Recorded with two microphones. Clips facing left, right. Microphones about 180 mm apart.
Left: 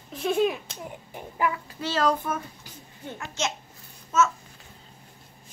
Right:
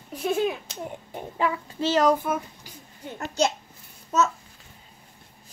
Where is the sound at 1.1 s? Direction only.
25° right (ahead or behind).